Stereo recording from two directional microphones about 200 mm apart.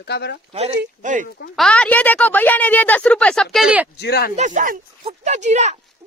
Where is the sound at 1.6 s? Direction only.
5° left (ahead or behind).